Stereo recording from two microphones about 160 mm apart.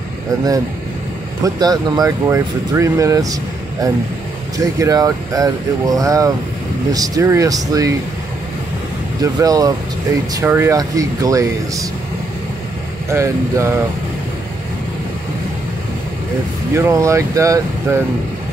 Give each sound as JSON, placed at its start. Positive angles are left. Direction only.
{"t": 1.4, "sound": "speech", "side_deg": -25}
{"t": 4.6, "sound": "speech", "side_deg": -20}
{"t": 9.2, "sound": "speech", "side_deg": -20}
{"t": 13.1, "sound": "speech", "side_deg": -15}
{"t": 16.7, "sound": "speech", "side_deg": -20}